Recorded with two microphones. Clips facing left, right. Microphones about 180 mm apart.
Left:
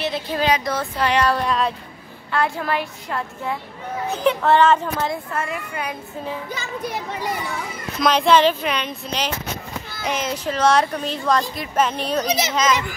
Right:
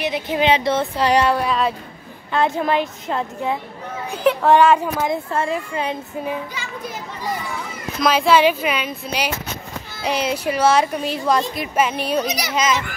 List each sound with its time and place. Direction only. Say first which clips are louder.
0.0 s speech: right 3 dB; 15° right (ahead or behind)
1.3 s speech: right 1 dB; 5° right (ahead or behind)
2.3 s speech: right 4 dB; 20° right (ahead or behind)
4.1 s a woman's voice: right 2 dB; 10° right (ahead or behind)
5.1 s speech: right 5 dB; 30° right (ahead or behind)
8.0 s a woman's voice: right 1 dB; 5° right (ahead or behind)
9.9 s a sound: right 3 dB; 30° right (ahead or behind)
10.2 s a woman's voice: right 1 dB; 10° right (ahead or behind)
12.3 s a child's voice: left 3 dB; 25° left (ahead or behind)